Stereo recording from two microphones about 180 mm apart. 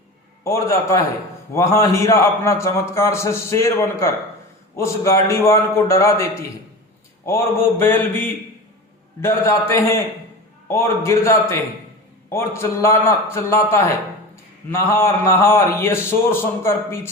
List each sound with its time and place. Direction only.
0.4 s a man's voice: 15° left (ahead or behind)
7.3 s a man's voice: 15° left (ahead or behind)